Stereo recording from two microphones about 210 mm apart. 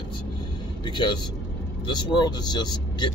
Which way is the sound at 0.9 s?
20° left (ahead or behind).